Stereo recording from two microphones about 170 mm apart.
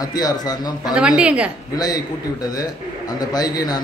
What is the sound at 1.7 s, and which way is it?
Speech, 20° left (ahead or behind).